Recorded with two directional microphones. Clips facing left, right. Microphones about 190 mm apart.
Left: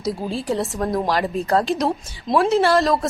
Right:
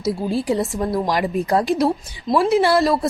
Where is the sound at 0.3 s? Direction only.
15° right (ahead or behind).